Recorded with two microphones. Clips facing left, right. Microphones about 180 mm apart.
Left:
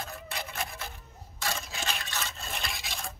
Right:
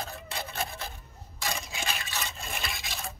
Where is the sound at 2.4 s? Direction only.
Centre (ahead or behind).